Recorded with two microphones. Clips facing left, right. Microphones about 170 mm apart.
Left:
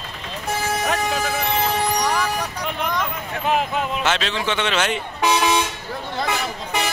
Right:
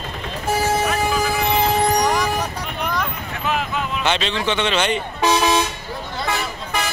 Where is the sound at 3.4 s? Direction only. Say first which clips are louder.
Left 2 dB; 50° left (ahead or behind).